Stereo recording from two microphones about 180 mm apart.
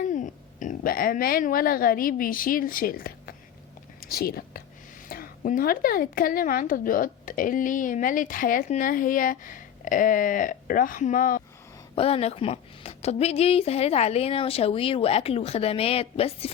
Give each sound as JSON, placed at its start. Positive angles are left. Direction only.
{"t": 0.1, "sound": "a woman's voice", "side_deg": 45}
{"t": 11.9, "sound": "a woman's voice", "side_deg": 35}